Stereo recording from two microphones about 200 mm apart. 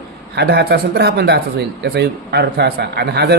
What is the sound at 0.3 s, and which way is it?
A man's voice, 55° right (ahead or behind).